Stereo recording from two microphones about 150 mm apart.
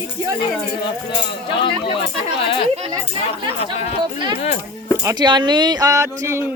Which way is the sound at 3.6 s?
50° left (ahead or behind).